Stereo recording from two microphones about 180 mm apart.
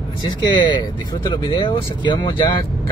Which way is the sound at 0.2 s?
25° left (ahead or behind).